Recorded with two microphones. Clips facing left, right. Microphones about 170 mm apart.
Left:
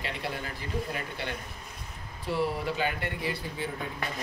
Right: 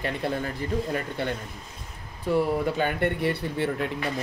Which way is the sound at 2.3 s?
50° right (ahead or behind).